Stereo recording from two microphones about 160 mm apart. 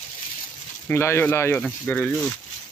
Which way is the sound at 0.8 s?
15° left (ahead or behind).